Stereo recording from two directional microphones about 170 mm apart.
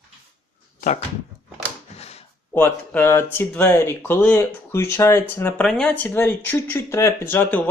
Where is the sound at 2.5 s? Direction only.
15° left (ahead or behind).